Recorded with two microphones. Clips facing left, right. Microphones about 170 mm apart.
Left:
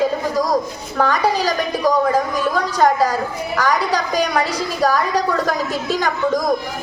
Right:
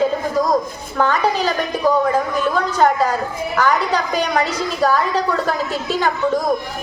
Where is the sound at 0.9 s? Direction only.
35° left (ahead or behind).